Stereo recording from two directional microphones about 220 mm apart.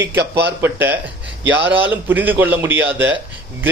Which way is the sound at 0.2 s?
50° right (ahead or behind).